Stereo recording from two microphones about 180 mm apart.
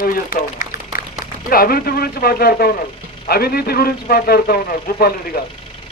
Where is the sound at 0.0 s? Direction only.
55° left (ahead or behind).